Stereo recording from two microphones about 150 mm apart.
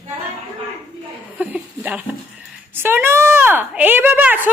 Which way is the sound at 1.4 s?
10° right (ahead or behind).